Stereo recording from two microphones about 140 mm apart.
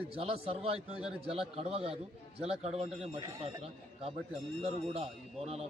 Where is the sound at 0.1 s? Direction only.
45° right (ahead or behind).